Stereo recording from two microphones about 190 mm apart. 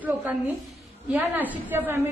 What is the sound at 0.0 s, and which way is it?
A woman's voice, 10° right (ahead or behind).